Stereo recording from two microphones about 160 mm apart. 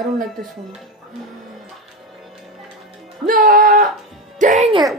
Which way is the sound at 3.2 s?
55° right (ahead or behind).